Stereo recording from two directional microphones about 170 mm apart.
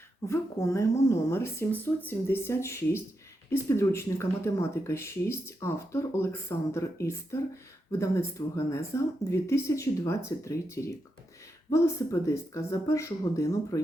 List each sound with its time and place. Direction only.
0.3 s speech: 15° left (ahead or behind)